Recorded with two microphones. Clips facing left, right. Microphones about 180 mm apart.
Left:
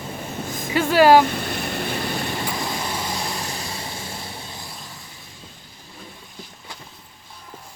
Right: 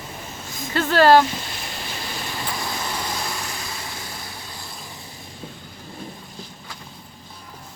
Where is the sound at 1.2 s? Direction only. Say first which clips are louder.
Left 5 dB; 60° left (ahead or behind).